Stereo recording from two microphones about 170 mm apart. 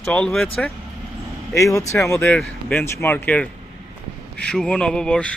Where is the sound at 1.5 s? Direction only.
20° left (ahead or behind).